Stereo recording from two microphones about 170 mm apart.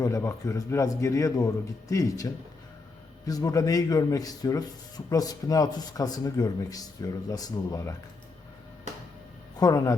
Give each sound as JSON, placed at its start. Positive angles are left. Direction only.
{"t": 0.0, "sound": "a man's voice", "side_deg": 15}
{"t": 9.6, "sound": "a man's voice", "side_deg": 20}